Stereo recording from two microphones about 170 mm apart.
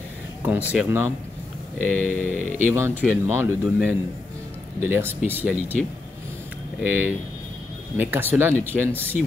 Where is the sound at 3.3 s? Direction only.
15° right (ahead or behind).